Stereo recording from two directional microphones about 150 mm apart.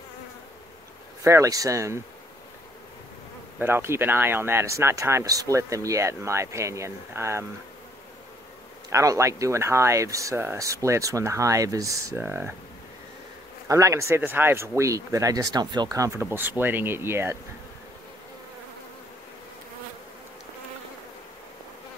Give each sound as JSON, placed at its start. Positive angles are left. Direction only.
{"t": 1.2, "sound": "speech", "side_deg": -20}
{"t": 3.5, "sound": "speech", "side_deg": -15}
{"t": 8.9, "sound": "speech", "side_deg": -20}
{"t": 13.7, "sound": "speech", "side_deg": -20}